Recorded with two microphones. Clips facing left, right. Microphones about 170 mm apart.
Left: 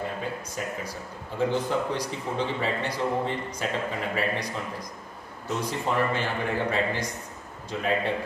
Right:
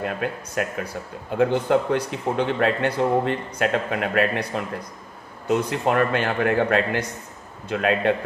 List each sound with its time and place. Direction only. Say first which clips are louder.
0.0 s a man's voice: right 5 dB; 70° right (ahead or behind)